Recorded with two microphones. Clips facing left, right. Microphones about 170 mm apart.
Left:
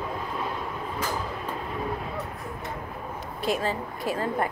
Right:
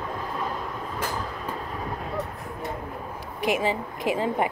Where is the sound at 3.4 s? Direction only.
15° right (ahead or behind).